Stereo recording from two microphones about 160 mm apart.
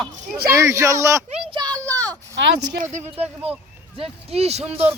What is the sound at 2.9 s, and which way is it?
A man's voice, 45° right (ahead or behind).